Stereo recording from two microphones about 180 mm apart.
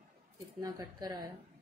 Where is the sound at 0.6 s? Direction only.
20° right (ahead or behind).